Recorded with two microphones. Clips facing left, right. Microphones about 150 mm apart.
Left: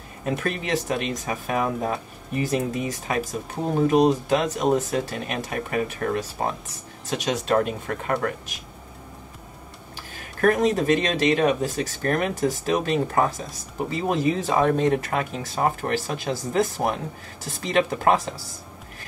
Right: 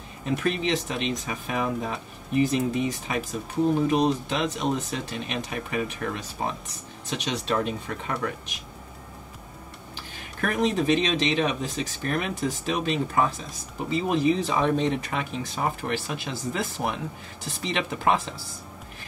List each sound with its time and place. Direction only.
0.4 s speech: 45° left (ahead or behind)
10.4 s speech: 45° left (ahead or behind)